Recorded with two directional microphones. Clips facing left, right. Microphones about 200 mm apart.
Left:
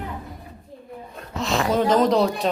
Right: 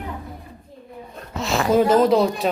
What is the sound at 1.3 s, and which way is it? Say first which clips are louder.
Speech: right 3 dB; 5° right (ahead or behind).